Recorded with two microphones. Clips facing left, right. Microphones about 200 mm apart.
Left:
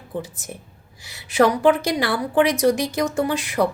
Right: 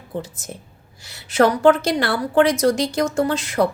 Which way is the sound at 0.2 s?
15° left (ahead or behind).